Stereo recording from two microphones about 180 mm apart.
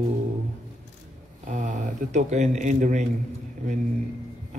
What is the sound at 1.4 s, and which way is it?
Speech, 45° right (ahead or behind).